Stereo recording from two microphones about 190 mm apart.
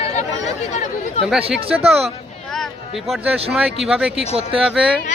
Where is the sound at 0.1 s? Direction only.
35° left (ahead or behind).